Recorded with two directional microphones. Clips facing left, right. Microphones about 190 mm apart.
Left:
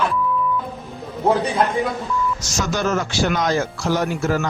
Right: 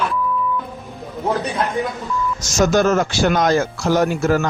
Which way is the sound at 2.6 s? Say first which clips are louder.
Right 7 dB; 45° right (ahead or behind).